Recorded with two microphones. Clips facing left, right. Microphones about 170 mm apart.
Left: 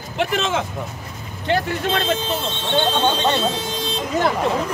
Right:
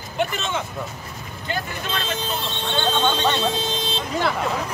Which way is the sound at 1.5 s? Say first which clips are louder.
Left 8 dB; 75° left (ahead or behind).